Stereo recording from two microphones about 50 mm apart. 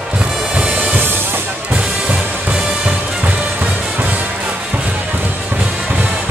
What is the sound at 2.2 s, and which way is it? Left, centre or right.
Music, centre.